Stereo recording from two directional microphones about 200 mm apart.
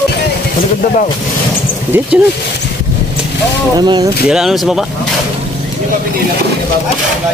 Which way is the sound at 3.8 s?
20° right (ahead or behind).